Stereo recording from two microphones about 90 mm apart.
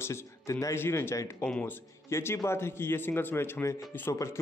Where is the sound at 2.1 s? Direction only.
30° left (ahead or behind).